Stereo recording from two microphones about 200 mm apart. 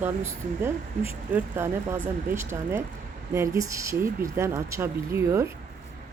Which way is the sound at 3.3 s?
15° right (ahead or behind).